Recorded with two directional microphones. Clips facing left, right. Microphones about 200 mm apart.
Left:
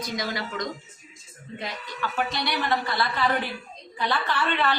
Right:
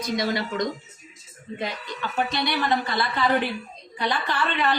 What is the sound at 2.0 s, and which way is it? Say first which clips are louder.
Speech: right 2 dB; 20° right (ahead or behind).